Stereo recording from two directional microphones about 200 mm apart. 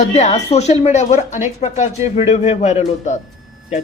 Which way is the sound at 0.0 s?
35° left (ahead or behind).